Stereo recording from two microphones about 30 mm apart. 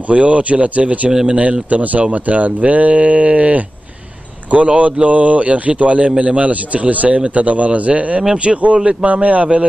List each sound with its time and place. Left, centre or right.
0.1 s a man's voice: right
1.2 s speech: right
1.7 s a man's voice: right
8.5 s speech: right
9.0 s a man's voice: right